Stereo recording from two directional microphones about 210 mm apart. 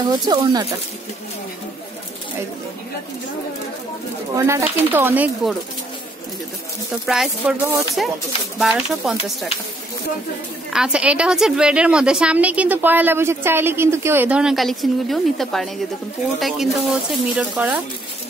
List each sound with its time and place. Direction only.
0.2 s speech: 20° right (ahead or behind)
4.4 s speech: 10° right (ahead or behind)
7.1 s a woman's voice: 5° right (ahead or behind)
10.7 s a woman's voice: 5° right (ahead or behind)